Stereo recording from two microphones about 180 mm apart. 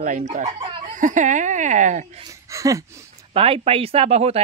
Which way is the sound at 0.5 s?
30° right (ahead or behind).